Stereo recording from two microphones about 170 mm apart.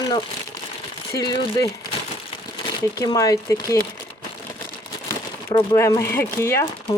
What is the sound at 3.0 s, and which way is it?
Speech, 20° left (ahead or behind).